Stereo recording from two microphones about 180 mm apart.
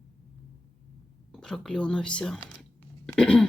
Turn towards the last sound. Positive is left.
turn(degrees=5)  # may be behind; listen again after turning